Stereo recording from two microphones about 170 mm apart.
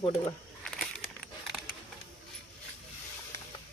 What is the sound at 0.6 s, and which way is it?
Crumpling, centre (ahead or behind).